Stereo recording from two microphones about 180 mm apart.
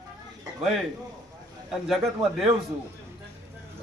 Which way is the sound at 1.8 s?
Centre (ahead or behind).